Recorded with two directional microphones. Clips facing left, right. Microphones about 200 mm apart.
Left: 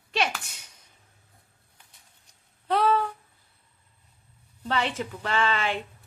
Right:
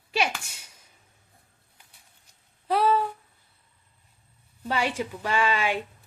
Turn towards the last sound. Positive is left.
turn(degrees=-10)  # may be behind; listen again after turning